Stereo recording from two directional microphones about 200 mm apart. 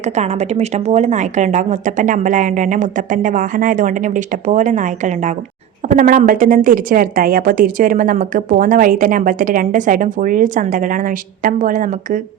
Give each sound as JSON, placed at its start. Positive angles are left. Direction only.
{"t": 0.0, "sound": "a woman's voice", "side_deg": -35}